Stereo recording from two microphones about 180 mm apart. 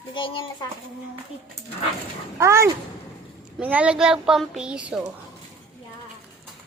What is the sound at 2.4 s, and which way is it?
A child's voice, 15° right (ahead or behind).